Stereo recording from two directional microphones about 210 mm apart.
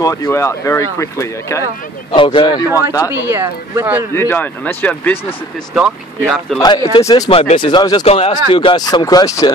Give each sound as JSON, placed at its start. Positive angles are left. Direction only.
{"t": 0.0, "sound": "speech", "side_deg": 15}
{"t": 2.1, "sound": "speech", "side_deg": 25}
{"t": 3.1, "sound": "speech", "side_deg": -10}
{"t": 4.1, "sound": "speech", "side_deg": 10}
{"t": 5.8, "sound": "speech", "side_deg": -5}
{"t": 6.6, "sound": "speech", "side_deg": 20}